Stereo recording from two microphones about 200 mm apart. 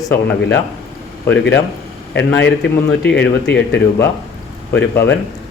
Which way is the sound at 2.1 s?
60° left (ahead or behind).